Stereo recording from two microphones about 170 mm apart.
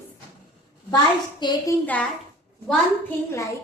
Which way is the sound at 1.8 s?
10° left (ahead or behind).